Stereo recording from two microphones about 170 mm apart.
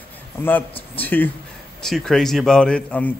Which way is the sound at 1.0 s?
10° left (ahead or behind).